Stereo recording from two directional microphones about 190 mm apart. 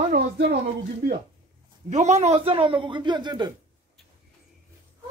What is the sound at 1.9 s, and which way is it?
A man's voice, 35° right (ahead or behind).